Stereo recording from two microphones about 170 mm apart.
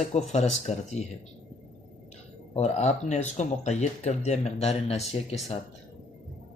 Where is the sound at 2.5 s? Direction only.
40° left (ahead or behind).